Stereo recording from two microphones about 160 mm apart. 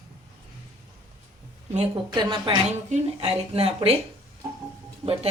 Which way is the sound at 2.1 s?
30° right (ahead or behind).